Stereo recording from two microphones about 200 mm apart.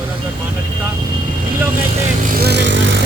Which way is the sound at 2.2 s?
45° right (ahead or behind).